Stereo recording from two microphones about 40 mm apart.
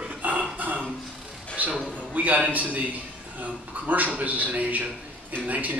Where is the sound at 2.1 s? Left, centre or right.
Right.